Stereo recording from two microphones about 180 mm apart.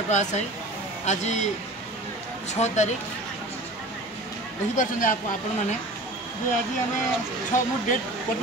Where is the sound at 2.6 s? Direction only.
40° left (ahead or behind).